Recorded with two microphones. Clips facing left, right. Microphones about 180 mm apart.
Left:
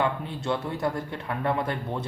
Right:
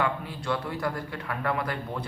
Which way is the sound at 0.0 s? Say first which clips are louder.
Left 2 dB; 25° left (ahead or behind).